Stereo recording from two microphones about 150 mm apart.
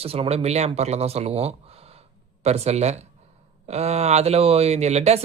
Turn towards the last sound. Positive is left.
turn(degrees=-45)  # may be behind; listen again after turning